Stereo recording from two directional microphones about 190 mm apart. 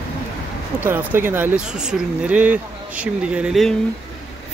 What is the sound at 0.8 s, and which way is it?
Speech, 10° right (ahead or behind).